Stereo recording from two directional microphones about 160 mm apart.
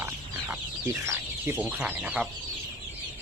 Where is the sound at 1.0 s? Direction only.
15° right (ahead or behind).